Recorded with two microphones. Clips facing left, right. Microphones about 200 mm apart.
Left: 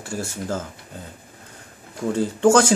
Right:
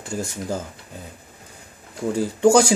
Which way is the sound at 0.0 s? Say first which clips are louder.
Right 1 dB; 20° right (ahead or behind).